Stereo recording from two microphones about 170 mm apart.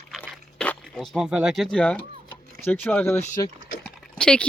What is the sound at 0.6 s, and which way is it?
Speech, 5° left (ahead or behind).